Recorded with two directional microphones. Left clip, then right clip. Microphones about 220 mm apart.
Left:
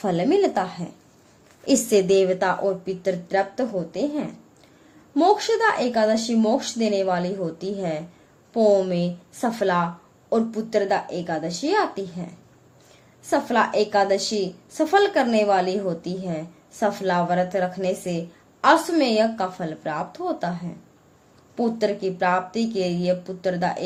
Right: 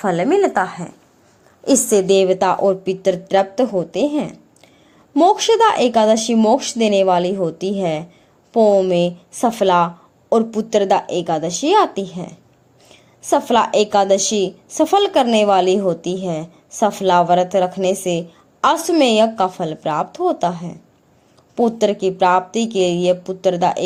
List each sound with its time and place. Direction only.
0.0 s a woman's voice: 5° right (ahead or behind); by 12.3 s 35° right (ahead or behind)
13.3 s speech: 35° right (ahead or behind)